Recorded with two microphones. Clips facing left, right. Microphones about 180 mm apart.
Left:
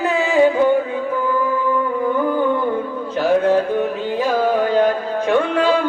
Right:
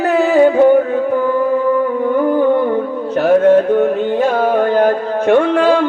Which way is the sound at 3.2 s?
65° right (ahead or behind).